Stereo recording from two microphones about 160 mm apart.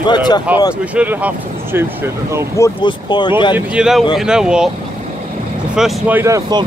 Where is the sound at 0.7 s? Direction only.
10° right (ahead or behind).